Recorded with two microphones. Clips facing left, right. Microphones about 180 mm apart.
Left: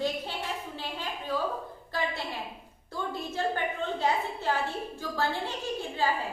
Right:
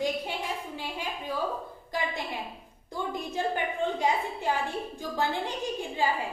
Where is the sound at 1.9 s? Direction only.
15° right (ahead or behind).